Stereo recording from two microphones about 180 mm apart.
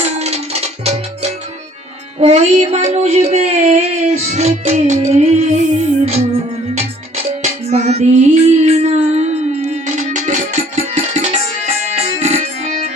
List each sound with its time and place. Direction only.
0.0 s music: 35° right (ahead or behind)
2.2 s speech: 35° right (ahead or behind)
7.4 s music: 35° right (ahead or behind)